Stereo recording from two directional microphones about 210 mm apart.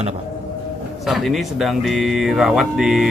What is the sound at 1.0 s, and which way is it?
Speech, centre (ahead or behind).